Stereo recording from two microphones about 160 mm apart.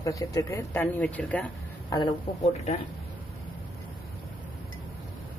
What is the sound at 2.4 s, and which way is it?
Speech, 40° left (ahead or behind).